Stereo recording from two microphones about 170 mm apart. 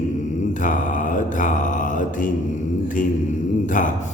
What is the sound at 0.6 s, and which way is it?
A man's voice, 50° left (ahead or behind).